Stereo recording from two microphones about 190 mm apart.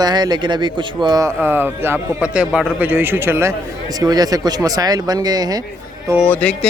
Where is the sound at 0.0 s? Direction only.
20° right (ahead or behind).